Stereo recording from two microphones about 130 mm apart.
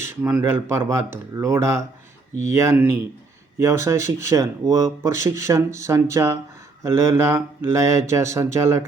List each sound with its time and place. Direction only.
0.0 s speech: 15° right (ahead or behind)